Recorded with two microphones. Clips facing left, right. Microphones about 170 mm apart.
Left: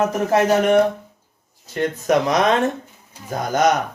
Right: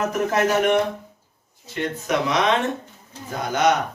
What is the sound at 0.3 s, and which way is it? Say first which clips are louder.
Speech: left 3 dB; 35° left (ahead or behind).